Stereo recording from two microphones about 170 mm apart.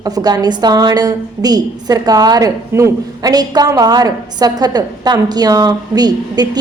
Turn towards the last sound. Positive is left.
turn(degrees=-25)  # may be behind; listen again after turning